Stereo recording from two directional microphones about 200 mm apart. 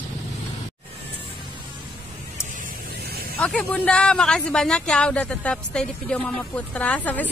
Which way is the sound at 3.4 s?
5° left (ahead or behind).